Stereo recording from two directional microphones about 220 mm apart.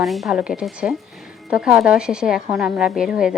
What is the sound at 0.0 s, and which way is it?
Speech, centre (ahead or behind).